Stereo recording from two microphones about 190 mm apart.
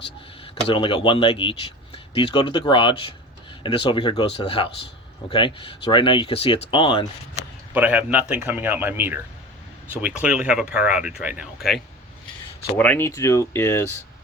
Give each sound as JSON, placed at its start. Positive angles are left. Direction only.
{"t": 0.7, "sound": "speech", "side_deg": 25}
{"t": 7.7, "sound": "speech", "side_deg": -10}
{"t": 12.7, "sound": "speech", "side_deg": 10}